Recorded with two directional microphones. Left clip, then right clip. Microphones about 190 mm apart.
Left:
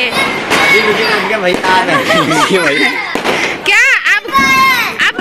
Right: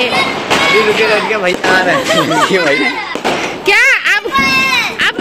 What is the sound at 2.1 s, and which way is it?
Speech, 25° right (ahead or behind).